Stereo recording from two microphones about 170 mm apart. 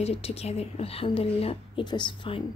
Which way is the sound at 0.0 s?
35° left (ahead or behind).